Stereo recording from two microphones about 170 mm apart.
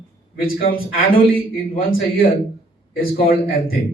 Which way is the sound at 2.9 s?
60° left (ahead or behind).